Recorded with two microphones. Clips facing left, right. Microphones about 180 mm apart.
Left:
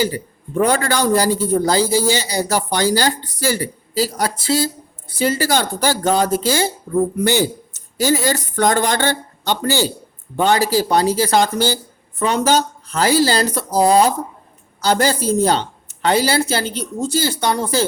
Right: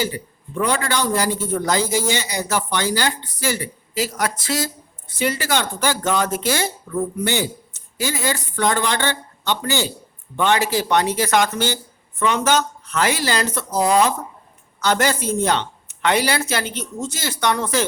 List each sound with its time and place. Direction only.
0.0 s speech: 40° left (ahead or behind)